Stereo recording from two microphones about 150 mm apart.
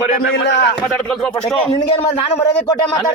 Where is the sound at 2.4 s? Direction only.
25° left (ahead or behind).